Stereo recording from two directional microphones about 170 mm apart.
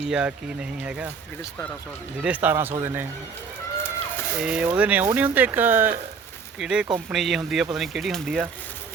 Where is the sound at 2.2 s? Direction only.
10° right (ahead or behind).